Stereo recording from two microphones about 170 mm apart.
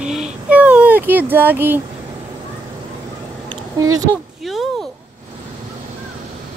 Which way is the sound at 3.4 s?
20° right (ahead or behind).